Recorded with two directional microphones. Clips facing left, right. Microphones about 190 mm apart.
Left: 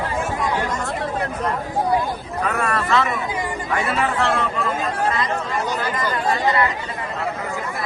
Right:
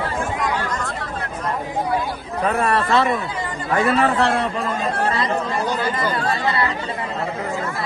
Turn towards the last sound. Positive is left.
turn(degrees=15)  # may be behind; listen again after turning